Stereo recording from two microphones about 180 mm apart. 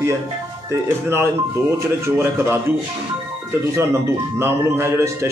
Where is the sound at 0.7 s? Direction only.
15° right (ahead or behind).